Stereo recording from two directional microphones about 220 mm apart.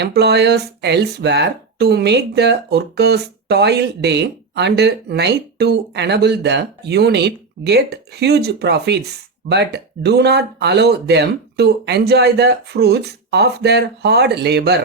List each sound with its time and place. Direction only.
0.0 s speech: 50° right (ahead or behind)